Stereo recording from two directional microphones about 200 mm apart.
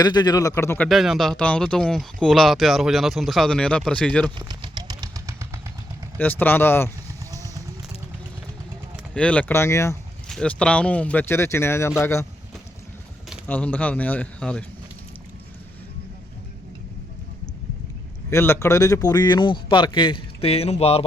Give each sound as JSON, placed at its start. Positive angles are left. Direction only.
{"t": 0.0, "sound": "speech", "side_deg": 20}
{"t": 0.9, "sound": "speech", "side_deg": 0}
{"t": 4.4, "sound": "vehicle", "side_deg": -20}
{"t": 6.1, "sound": "speech", "side_deg": 10}
{"t": 9.1, "sound": "speech", "side_deg": 5}
{"t": 10.2, "sound": "speech", "side_deg": 5}
{"t": 13.5, "sound": "speech", "side_deg": 10}
{"t": 18.3, "sound": "a man's voice", "side_deg": 10}